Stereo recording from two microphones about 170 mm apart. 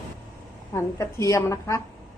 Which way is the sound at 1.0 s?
20° left (ahead or behind).